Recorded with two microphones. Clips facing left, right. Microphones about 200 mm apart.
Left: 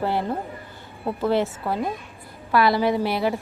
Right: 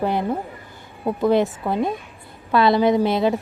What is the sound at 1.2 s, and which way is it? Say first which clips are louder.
A woman's voice: right 4 dB; 15° right (ahead or behind).